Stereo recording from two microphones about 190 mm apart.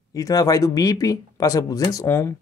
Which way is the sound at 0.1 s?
20° left (ahead or behind).